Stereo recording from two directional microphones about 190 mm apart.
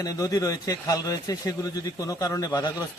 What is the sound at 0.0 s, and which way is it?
Speech, 20° left (ahead or behind).